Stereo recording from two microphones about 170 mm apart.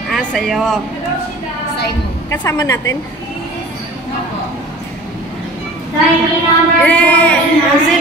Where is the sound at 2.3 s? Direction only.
20° left (ahead or behind).